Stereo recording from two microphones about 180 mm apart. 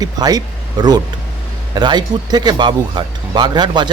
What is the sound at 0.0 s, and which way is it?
A man's voice, 20° right (ahead or behind).